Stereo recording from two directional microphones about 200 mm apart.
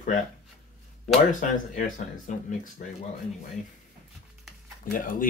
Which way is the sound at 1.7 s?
40° left (ahead or behind).